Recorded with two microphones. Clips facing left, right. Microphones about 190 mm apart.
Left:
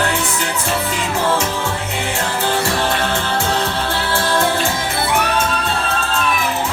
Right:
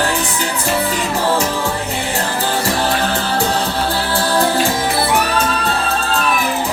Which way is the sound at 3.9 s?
35° right (ahead or behind).